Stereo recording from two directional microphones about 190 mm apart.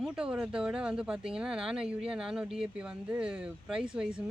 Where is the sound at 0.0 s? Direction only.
5° right (ahead or behind).